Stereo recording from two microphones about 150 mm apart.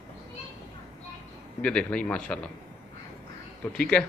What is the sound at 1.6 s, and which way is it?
Speech, 5° left (ahead or behind).